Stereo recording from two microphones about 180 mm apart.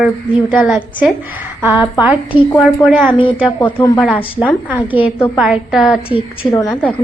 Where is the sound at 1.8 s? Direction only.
5° right (ahead or behind).